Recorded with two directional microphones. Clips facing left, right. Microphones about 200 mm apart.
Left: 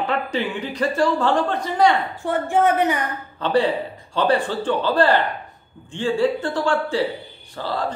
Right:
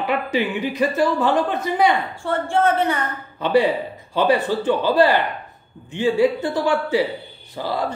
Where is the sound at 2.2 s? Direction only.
15° left (ahead or behind).